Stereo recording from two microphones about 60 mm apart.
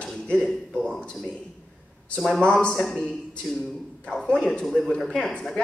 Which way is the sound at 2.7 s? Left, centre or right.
Centre.